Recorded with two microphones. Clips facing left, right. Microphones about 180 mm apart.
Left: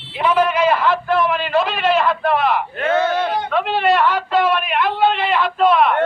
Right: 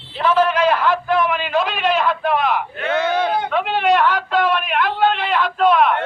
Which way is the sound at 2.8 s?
40° left (ahead or behind).